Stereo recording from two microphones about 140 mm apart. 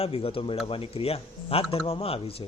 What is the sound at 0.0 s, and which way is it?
A man's voice, 45° left (ahead or behind).